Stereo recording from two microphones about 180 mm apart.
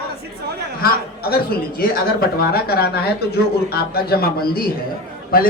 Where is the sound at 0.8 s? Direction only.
60° left (ahead or behind).